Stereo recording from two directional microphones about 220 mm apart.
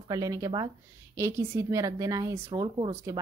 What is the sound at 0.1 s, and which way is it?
Speech, 15° right (ahead or behind).